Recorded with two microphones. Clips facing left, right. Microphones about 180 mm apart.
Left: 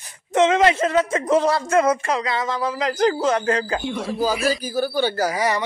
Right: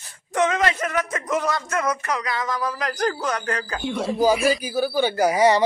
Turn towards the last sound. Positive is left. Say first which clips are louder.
# right 5 dB
turn(degrees=-25)  # may be behind; listen again after turning